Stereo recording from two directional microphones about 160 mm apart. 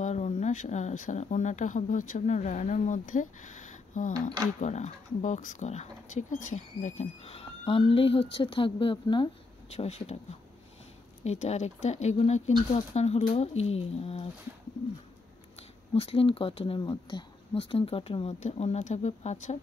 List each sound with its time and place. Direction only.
0.0 s speech: 45° left (ahead or behind)
4.1 s speech: 25° right (ahead or behind)
4.6 s speech: 45° left (ahead or behind); by 9.3 s 30° left (ahead or behind)
9.7 s speech: 40° left (ahead or behind)
11.2 s speech: 45° left (ahead or behind)
15.9 s speech: 35° left (ahead or behind)